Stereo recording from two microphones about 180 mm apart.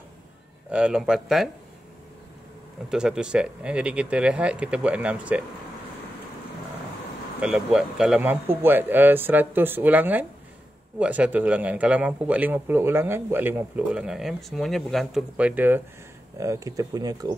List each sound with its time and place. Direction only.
0.7 s speech: 5° right (ahead or behind)
2.9 s a man's voice: 5° right (ahead or behind)
7.3 s a man's voice: 5° right (ahead or behind); by 17.3 s 20° right (ahead or behind)